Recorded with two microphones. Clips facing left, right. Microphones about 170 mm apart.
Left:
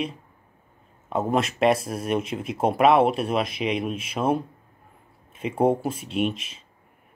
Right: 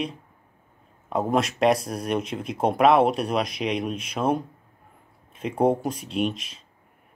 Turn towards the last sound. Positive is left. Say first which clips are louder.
# left 1 dB
turn(degrees=5)  # may be behind; listen again after turning